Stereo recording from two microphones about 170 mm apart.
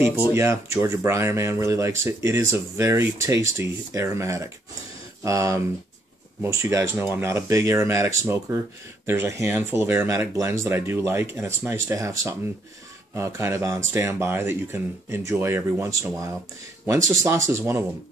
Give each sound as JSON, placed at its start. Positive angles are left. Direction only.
{"t": 0.3, "sound": "speech", "side_deg": -15}